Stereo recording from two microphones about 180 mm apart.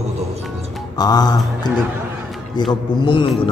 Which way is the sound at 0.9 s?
20° left (ahead or behind).